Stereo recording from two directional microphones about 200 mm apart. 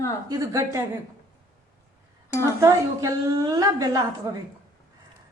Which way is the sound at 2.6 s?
15° right (ahead or behind).